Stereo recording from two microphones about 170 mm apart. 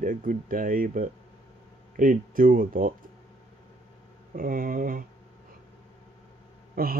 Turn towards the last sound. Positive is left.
turn(degrees=-60)  # may be behind; listen again after turning